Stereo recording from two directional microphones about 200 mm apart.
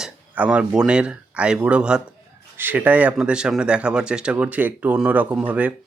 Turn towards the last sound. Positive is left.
turn(degrees=-5)  # may be behind; listen again after turning